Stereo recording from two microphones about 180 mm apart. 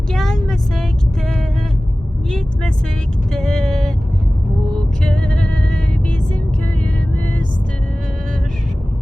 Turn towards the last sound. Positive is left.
turn(degrees=5)  # may be behind; listen again after turning